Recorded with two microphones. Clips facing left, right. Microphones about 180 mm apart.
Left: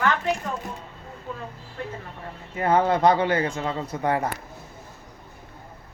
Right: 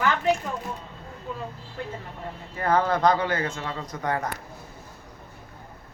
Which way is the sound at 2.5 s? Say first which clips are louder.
Left 2 dB; 25° left (ahead or behind).